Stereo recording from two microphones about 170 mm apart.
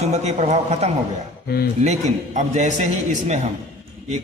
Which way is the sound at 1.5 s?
65° left (ahead or behind).